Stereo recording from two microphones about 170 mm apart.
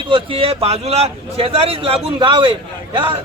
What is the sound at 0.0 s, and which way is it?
A man's voice, 30° right (ahead or behind).